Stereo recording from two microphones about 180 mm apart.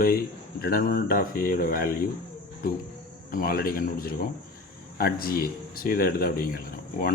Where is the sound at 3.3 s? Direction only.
50° left (ahead or behind).